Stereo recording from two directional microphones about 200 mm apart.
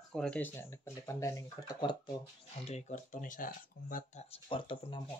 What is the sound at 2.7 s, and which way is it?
Speech, 35° left (ahead or behind).